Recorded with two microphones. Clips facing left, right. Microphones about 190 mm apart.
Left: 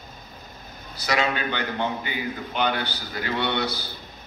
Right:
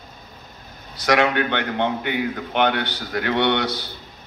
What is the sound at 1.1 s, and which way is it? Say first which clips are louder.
A man's voice: right 6 dB; 70° right (ahead or behind).